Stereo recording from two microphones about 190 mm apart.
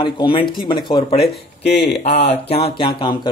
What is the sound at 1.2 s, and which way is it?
Speech, 60° left (ahead or behind).